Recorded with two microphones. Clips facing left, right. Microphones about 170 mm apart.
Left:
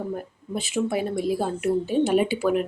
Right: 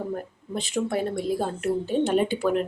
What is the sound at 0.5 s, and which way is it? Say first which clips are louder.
A woman's voice: left 1 dB; 5° left (ahead or behind).